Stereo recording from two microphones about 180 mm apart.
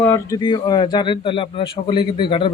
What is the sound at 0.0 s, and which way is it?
Speech, 15° left (ahead or behind).